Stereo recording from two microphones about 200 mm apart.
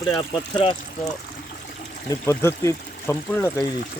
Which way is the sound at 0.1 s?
25° left (ahead or behind).